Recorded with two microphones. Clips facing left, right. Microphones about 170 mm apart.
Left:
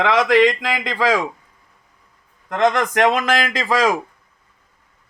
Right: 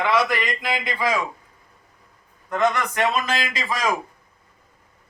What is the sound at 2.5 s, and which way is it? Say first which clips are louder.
A man's voice: left 4 dB; 90° left.